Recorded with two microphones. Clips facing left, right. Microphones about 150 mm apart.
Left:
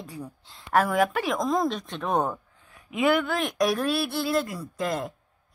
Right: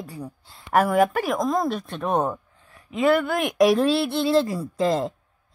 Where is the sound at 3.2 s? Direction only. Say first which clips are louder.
Right 3 dB; 10° right (ahead or behind).